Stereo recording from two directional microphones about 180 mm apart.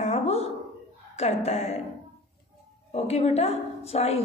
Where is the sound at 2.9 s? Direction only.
35° left (ahead or behind).